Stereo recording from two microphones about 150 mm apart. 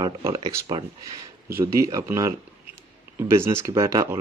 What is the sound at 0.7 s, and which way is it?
Speech, 35° right (ahead or behind).